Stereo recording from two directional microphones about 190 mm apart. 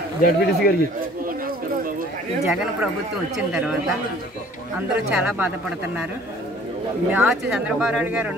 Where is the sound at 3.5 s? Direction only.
5° right (ahead or behind).